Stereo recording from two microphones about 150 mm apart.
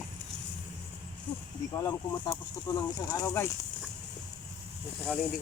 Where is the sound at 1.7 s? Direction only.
25° left (ahead or behind).